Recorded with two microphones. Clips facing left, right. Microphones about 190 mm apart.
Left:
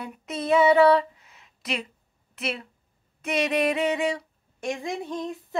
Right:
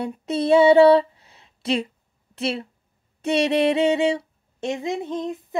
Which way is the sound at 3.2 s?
30° right (ahead or behind).